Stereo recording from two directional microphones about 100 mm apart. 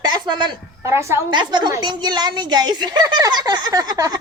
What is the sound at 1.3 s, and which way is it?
A child's voice, 50° right (ahead or behind).